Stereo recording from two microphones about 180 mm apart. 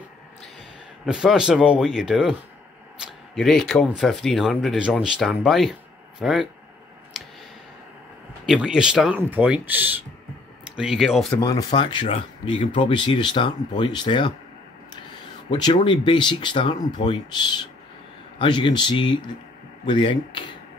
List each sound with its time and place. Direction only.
1.0 s speech: 5° right (ahead or behind)
3.0 s a sound: 5° right (ahead or behind)
3.3 s speech: centre (ahead or behind)
8.5 s speech: 5° right (ahead or behind)
11.3 s speech: 20° left (ahead or behind)
15.5 s speech: 25° left (ahead or behind)